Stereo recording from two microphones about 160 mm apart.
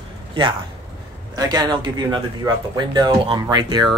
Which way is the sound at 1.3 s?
25° right (ahead or behind).